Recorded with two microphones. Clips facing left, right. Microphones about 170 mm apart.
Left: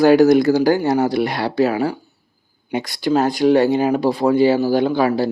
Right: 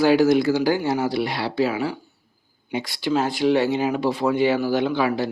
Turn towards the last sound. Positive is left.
turn(degrees=40)  # may be behind; listen again after turning